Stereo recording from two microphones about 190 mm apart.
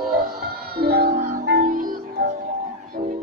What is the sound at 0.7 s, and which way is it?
Music, 55° right (ahead or behind).